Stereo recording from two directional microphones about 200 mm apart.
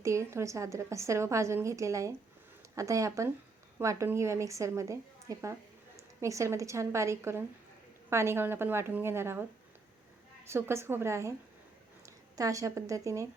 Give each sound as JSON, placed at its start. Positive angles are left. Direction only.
{"t": 0.0, "sound": "a woman's voice", "side_deg": -15}